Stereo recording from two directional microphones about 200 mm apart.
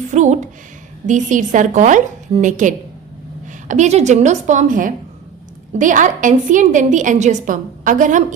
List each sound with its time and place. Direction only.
0.1 s a woman's voice: 35° right (ahead or behind)